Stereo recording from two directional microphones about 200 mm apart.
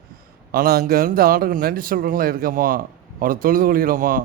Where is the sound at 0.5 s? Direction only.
50° right (ahead or behind).